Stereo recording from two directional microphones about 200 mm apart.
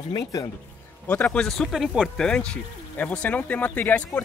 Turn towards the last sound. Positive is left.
turn(degrees=10)  # may be behind; listen again after turning